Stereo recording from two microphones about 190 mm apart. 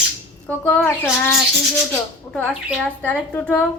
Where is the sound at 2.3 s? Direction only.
5° left (ahead or behind).